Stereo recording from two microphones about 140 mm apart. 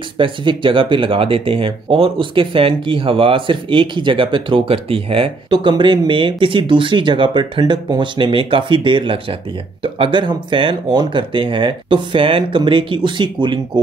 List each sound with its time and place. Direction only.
0.2 s speech: 35° right (ahead or behind)